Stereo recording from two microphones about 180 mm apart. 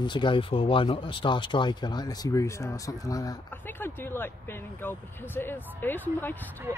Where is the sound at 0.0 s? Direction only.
25° left (ahead or behind).